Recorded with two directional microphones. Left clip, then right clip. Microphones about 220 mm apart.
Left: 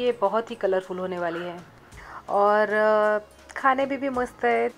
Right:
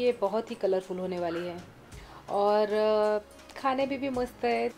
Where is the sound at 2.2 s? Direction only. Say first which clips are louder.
Left 5 dB; 15° left (ahead or behind).